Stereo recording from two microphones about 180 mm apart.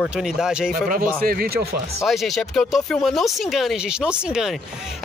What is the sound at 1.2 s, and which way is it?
Speech, 55° right (ahead or behind).